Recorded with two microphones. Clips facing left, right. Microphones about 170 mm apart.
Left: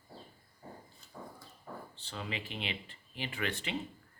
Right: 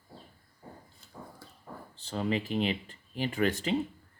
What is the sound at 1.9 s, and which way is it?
Speech, 40° right (ahead or behind).